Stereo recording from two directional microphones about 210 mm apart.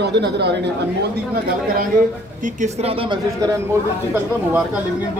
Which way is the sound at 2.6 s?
30° right (ahead or behind).